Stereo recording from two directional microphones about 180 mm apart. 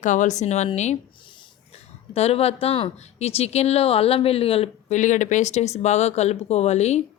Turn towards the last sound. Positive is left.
turn(degrees=35)  # may be behind; listen again after turning